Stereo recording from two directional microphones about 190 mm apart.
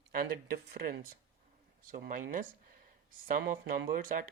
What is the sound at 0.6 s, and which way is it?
Speech, 50° right (ahead or behind).